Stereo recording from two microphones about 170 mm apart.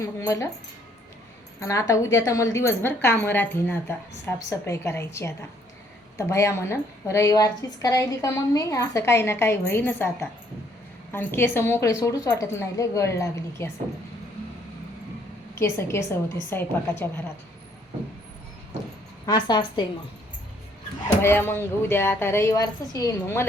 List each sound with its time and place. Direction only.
0.0 s a woman's voice: 15° left (ahead or behind)
1.5 s a woman's voice: 15° left (ahead or behind)
15.5 s a woman's voice: 15° left (ahead or behind)
19.2 s a woman's voice: 25° left (ahead or behind)
21.2 s a woman's voice: 15° left (ahead or behind)